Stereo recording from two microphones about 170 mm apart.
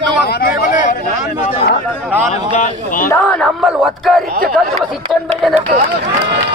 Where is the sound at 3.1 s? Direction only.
10° left (ahead or behind).